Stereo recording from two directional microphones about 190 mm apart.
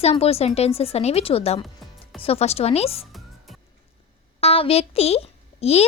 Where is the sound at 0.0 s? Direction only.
30° left (ahead or behind).